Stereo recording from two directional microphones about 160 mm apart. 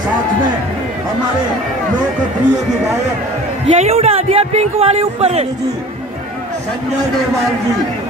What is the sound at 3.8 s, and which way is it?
A man's voice, 40° right (ahead or behind).